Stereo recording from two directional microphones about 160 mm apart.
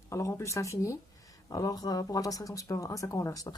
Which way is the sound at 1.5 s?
20° left (ahead or behind).